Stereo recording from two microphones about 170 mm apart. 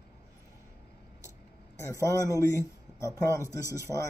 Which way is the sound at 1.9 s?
20° left (ahead or behind).